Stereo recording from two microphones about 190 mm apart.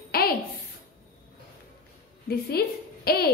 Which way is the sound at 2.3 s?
55° left (ahead or behind).